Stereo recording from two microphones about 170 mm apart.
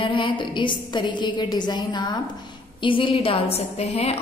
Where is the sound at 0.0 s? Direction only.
30° left (ahead or behind).